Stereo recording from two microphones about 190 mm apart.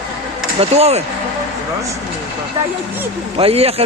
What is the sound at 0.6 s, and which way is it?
Speech, 35° right (ahead or behind).